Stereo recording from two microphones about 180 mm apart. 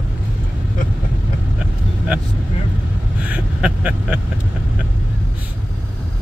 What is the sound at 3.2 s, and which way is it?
Speech, 5° right (ahead or behind).